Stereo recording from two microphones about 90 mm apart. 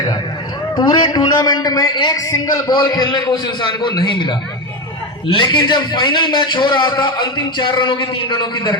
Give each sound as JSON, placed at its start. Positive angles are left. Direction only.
{"t": 0.8, "sound": "a man's voice", "side_deg": 50}